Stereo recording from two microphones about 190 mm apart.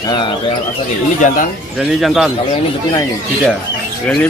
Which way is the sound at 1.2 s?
40° left (ahead or behind).